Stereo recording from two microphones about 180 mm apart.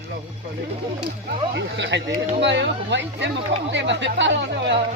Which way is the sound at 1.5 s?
75° right (ahead or behind).